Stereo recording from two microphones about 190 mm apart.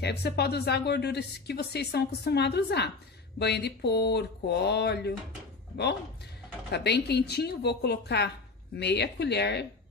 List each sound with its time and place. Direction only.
0.0 s speech: 60° left (ahead or behind)
6.7 s speech: 60° left (ahead or behind)